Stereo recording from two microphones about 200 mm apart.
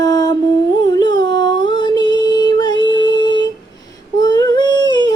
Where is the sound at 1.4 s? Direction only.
20° left (ahead or behind).